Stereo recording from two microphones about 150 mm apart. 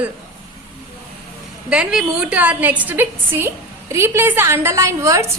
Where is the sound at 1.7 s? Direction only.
5° right (ahead or behind).